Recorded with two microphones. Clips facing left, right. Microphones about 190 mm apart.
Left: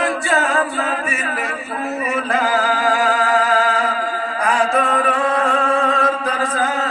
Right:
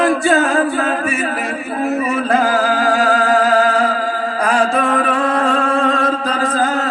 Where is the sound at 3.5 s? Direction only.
35° right (ahead or behind).